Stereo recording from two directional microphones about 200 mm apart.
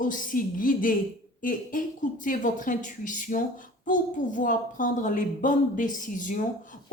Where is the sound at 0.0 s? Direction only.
40° left (ahead or behind).